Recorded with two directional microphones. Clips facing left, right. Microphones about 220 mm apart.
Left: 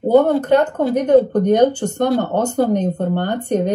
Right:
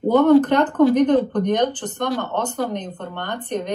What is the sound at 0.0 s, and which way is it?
Speech, 25° left (ahead or behind).